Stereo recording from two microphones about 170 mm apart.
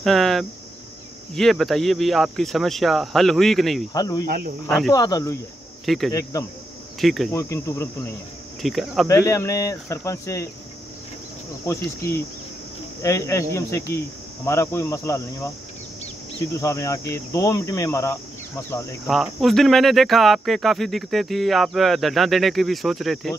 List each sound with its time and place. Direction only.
0.0 s cricket: centre (ahead or behind)
1.3 s speech: centre (ahead or behind)
3.9 s speech: 25° left (ahead or behind)
4.6 s speech: 5° left (ahead or behind)
4.9 s speech: 20° left (ahead or behind)
5.9 s speech: centre (ahead or behind)
7.0 s cricket: centre (ahead or behind)
7.3 s speech: 15° left (ahead or behind)
8.6 s speech: centre (ahead or behind)
9.0 s speech: 15° left (ahead or behind)
13.0 s speech: 20° left (ahead or behind)
16.5 s speech: 20° left (ahead or behind)
19.0 s speech: centre (ahead or behind)